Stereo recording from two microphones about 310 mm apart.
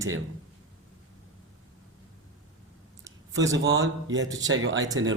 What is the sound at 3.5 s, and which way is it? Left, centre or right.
A man's voice, right.